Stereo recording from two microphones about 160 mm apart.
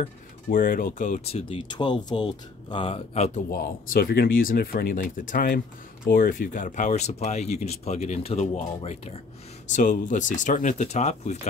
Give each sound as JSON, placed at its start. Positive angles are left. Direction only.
{"t": 0.5, "sound": "speech", "side_deg": 60}
{"t": 3.5, "sound": "speech", "side_deg": 75}
{"t": 9.7, "sound": "speech", "side_deg": 50}